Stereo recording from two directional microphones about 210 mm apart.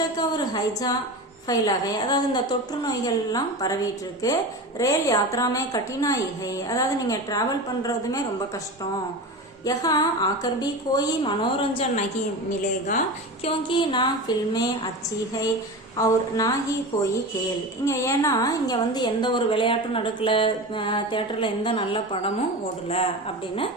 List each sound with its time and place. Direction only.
0.2 s a woman's voice: 20° left (ahead or behind)
9.6 s a woman's voice: 20° left (ahead or behind)
13.4 s a woman's voice: 25° left (ahead or behind)
16.0 s a woman's voice: 15° left (ahead or behind)